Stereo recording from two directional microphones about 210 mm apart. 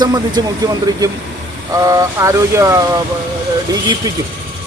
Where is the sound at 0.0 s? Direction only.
20° right (ahead or behind).